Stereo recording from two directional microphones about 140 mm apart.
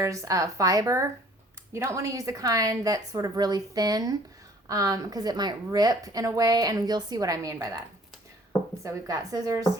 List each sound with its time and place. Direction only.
0.0 s a woman's voice: 25° right (ahead or behind)
8.8 s a woman's voice: 25° right (ahead or behind)